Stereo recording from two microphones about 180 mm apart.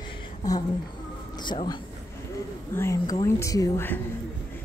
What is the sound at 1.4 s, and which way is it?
A woman's voice, 25° left (ahead or behind).